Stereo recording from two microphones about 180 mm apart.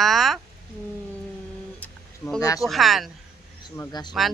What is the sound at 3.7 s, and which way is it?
Speech, 20° left (ahead or behind).